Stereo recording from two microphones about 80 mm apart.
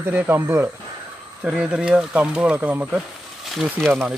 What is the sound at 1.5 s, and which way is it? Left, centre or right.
Speech, centre.